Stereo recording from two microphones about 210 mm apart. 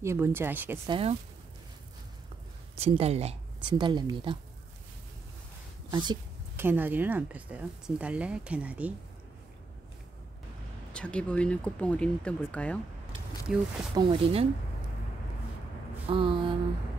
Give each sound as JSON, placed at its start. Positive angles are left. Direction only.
{"t": 0.0, "sound": "speech", "side_deg": -10}
{"t": 0.8, "sound": "speech", "side_deg": -25}
{"t": 2.8, "sound": "speech", "side_deg": -30}
{"t": 5.9, "sound": "a sound", "side_deg": -20}
{"t": 6.6, "sound": "speech", "side_deg": -10}
{"t": 10.9, "sound": "speech", "side_deg": 5}
{"t": 13.9, "sound": "speech", "side_deg": -25}
{"t": 16.1, "sound": "speech", "side_deg": -25}